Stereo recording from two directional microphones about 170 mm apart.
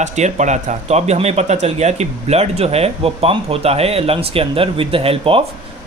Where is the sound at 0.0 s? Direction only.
45° right (ahead or behind).